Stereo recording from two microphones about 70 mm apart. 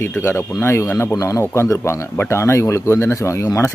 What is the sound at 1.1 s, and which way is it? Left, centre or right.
Speech, left.